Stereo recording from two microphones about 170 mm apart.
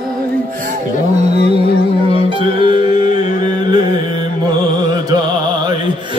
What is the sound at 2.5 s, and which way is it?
Music, 30° right (ahead or behind).